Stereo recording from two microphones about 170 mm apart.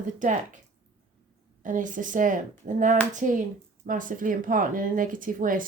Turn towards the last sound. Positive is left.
turn(degrees=-55)  # may be behind; listen again after turning